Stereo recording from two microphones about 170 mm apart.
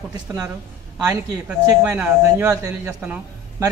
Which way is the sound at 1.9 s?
10° right (ahead or behind).